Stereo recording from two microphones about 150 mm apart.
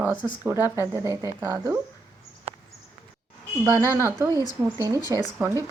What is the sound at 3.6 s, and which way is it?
Speech, 20° right (ahead or behind).